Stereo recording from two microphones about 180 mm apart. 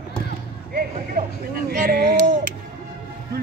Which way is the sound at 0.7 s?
55° right (ahead or behind).